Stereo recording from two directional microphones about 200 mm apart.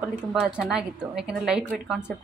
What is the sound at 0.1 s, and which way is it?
Speech, 5° right (ahead or behind).